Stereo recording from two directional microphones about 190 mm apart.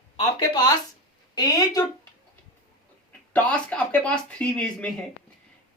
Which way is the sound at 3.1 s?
5° left (ahead or behind).